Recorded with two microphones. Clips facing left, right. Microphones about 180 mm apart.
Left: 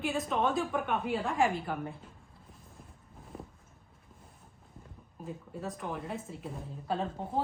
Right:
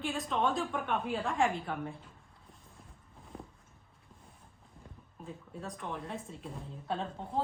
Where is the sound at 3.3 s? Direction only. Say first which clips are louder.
Left 2 dB; 5° left (ahead or behind).